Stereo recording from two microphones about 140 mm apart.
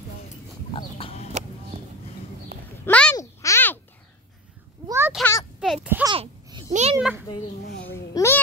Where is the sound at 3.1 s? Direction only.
20° left (ahead or behind).